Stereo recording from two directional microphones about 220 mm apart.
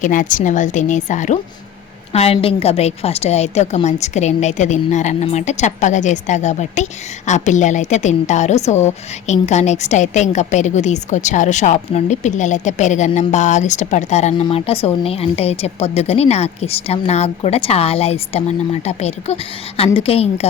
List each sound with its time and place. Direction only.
0.0 s a woman's voice: 35° left (ahead or behind)